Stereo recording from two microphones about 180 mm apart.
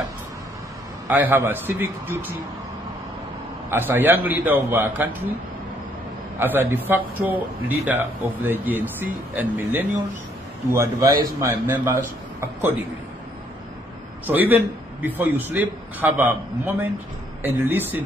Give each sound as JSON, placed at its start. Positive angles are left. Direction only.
{"t": 1.0, "sound": "speech", "side_deg": -10}
{"t": 3.7, "sound": "speech", "side_deg": -10}
{"t": 6.4, "sound": "speech", "side_deg": -10}
{"t": 14.2, "sound": "speech", "side_deg": -10}